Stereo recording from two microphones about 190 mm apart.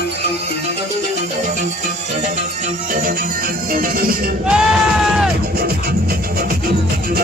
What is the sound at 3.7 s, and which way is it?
Music, 50° right (ahead or behind).